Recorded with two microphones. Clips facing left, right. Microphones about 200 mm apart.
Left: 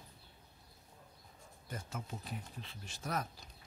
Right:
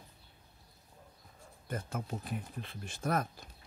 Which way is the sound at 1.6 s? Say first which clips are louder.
Right 6 dB; 55° right (ahead or behind).